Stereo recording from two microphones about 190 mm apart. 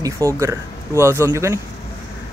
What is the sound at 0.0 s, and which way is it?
Speech, 15° right (ahead or behind).